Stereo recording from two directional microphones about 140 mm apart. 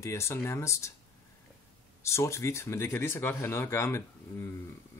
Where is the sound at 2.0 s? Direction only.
20° left (ahead or behind).